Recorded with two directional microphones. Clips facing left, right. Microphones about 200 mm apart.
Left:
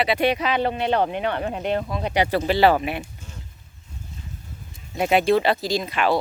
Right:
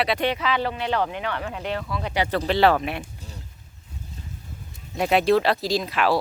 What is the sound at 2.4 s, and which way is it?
Speech, 5° left (ahead or behind).